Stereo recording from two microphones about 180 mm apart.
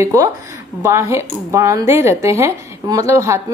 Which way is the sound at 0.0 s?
15° right (ahead or behind).